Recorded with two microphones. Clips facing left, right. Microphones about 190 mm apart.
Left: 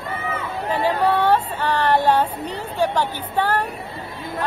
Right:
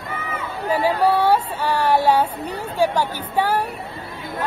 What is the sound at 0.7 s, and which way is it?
Speech, 10° right (ahead or behind).